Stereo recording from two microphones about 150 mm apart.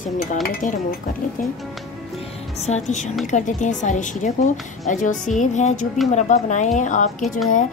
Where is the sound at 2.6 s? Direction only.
50° left (ahead or behind).